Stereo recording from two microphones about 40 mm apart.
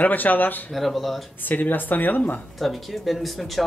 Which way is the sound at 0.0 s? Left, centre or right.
Left.